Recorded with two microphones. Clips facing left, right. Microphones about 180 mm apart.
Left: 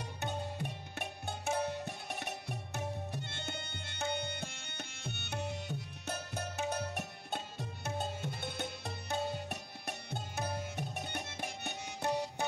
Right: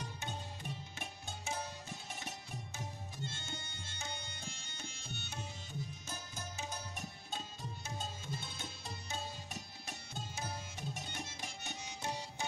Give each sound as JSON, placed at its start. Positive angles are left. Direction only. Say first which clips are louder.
{"t": 0.0, "sound": "music", "louder": "left 6 dB", "side_deg": 65}